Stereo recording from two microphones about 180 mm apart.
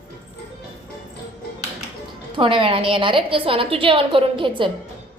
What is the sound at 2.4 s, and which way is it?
A woman's voice, 30° right (ahead or behind).